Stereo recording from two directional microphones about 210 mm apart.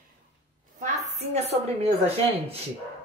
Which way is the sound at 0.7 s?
35° right (ahead or behind).